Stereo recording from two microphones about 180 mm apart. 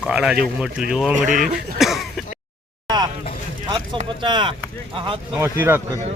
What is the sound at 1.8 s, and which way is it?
Throat clearing, centre (ahead or behind).